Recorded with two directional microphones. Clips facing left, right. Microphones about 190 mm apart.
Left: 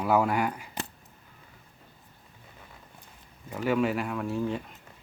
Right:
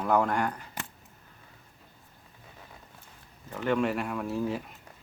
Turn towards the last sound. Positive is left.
turn(degrees=0)  # may be behind; listen again after turning